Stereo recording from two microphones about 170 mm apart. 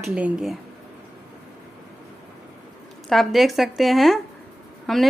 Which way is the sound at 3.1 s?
Centre (ahead or behind).